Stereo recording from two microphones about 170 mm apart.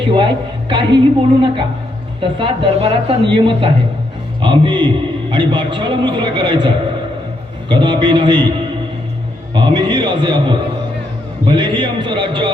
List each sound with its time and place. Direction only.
0.0 s a woman's voice: 30° right (ahead or behind)
9.6 s a man's voice: 30° right (ahead or behind)